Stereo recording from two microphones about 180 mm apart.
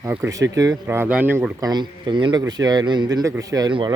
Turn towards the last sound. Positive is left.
turn(degrees=-25)  # may be behind; listen again after turning